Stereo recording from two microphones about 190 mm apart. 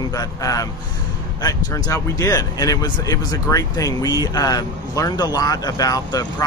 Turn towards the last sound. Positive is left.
turn(degrees=20)  # may be behind; listen again after turning